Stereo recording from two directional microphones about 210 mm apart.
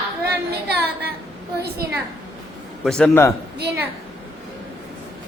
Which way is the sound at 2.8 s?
5° left (ahead or behind).